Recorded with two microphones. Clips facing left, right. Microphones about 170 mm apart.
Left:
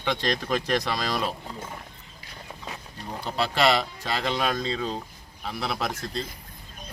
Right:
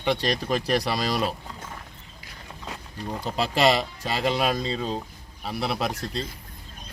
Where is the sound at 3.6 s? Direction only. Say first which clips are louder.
Right 2 dB; 10° right (ahead or behind).